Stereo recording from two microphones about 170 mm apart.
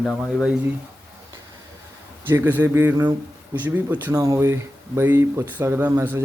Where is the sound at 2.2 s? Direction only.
10° right (ahead or behind).